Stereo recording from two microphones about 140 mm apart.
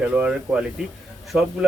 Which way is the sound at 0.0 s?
10° right (ahead or behind).